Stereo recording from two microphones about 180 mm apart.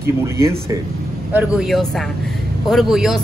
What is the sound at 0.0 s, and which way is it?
A woman's voice, 15° right (ahead or behind).